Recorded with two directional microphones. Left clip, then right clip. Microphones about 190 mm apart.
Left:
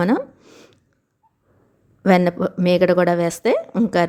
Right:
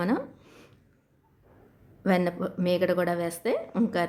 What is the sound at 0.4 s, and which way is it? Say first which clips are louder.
Plop: left 7 dB; 25° left (ahead or behind).